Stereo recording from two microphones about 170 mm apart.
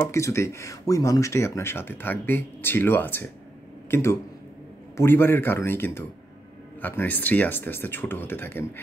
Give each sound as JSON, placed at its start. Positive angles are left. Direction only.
{"t": 0.1, "sound": "speech", "side_deg": 15}